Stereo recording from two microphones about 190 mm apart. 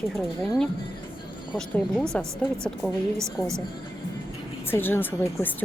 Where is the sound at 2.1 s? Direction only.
5° left (ahead or behind).